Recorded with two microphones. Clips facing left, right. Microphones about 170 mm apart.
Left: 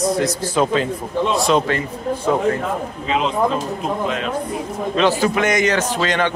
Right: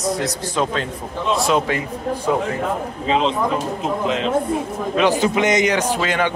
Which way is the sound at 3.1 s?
30° right (ahead or behind).